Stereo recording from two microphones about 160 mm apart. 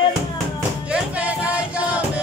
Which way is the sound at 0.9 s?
10° right (ahead or behind).